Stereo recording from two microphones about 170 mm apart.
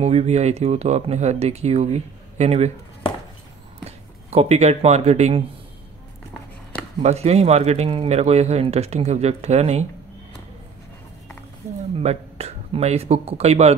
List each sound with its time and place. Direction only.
0.0 s speech: 40° right (ahead or behind)
4.3 s speech: 40° right (ahead or behind)
7.0 s speech: 40° right (ahead or behind)
12.0 s speech: 40° right (ahead or behind)